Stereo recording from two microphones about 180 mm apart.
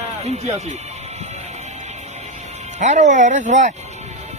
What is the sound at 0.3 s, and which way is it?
Speech, 35° right (ahead or behind).